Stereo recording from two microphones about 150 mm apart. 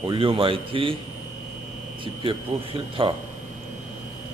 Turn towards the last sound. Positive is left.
turn(degrees=-35)  # may be behind; listen again after turning